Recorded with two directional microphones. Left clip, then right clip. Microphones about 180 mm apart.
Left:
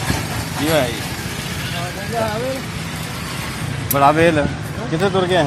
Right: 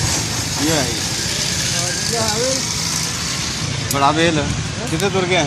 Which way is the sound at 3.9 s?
35° left (ahead or behind).